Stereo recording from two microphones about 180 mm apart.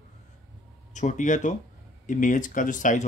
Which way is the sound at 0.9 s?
45° left (ahead or behind).